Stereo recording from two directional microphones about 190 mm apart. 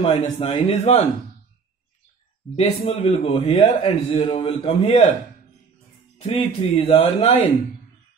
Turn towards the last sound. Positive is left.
turn(degrees=30)  # may be behind; listen again after turning